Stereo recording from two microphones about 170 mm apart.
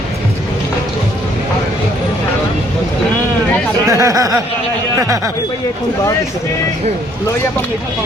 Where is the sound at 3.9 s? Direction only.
20° right (ahead or behind).